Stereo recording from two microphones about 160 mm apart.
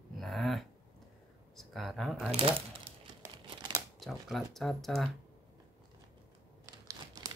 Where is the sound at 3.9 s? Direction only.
Centre (ahead or behind).